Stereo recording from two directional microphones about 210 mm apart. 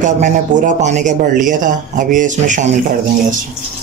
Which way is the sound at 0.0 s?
35° right (ahead or behind).